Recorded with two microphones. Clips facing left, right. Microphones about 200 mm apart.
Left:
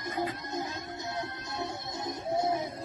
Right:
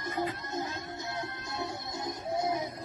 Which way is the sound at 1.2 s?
20° left (ahead or behind).